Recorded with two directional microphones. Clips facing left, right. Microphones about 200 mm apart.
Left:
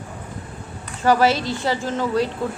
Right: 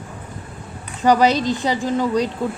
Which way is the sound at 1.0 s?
15° right (ahead or behind).